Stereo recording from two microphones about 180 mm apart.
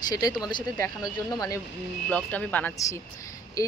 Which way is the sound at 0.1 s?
20° left (ahead or behind).